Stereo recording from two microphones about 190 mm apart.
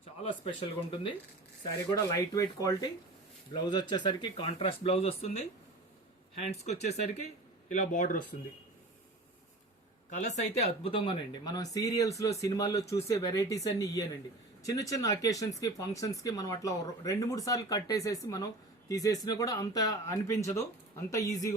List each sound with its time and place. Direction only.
0.2 s speech: 30° left (ahead or behind)
6.5 s speech: 35° left (ahead or behind)
10.2 s speech: 35° left (ahead or behind); by 21.5 s 15° left (ahead or behind)